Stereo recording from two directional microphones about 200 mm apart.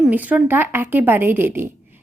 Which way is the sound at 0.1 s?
10° right (ahead or behind).